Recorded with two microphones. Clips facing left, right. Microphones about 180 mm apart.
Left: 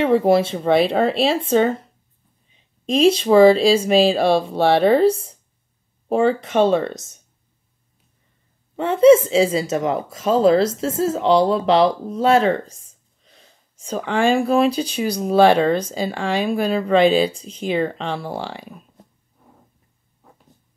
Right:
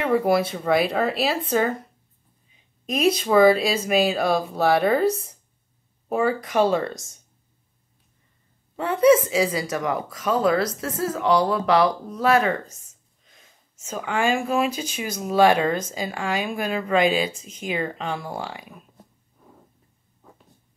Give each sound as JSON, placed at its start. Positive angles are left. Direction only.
{"t": 0.0, "sound": "speech", "side_deg": 25}
{"t": 8.7, "sound": "a woman's voice", "side_deg": 25}